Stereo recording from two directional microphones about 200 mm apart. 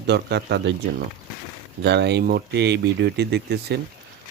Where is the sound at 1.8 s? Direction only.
55° right (ahead or behind).